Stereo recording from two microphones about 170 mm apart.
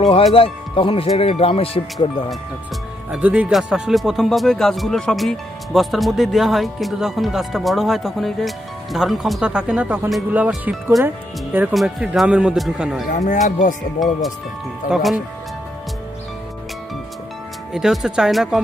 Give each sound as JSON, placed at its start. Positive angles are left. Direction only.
{"t": 0.0, "sound": "speech", "side_deg": 35}
{"t": 3.1, "sound": "speech", "side_deg": -10}
{"t": 13.2, "sound": "speech", "side_deg": 45}
{"t": 14.9, "sound": "speech", "side_deg": 0}
{"t": 17.7, "sound": "speech", "side_deg": 0}